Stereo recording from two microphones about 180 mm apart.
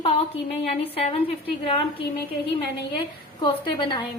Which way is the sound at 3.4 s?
25° left (ahead or behind).